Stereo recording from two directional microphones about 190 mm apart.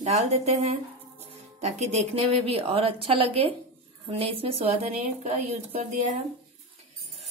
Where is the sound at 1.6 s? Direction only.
35° right (ahead or behind).